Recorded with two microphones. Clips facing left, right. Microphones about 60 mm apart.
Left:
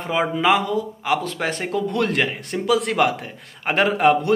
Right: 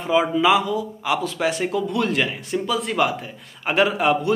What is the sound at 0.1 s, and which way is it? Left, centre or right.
A man's voice, left.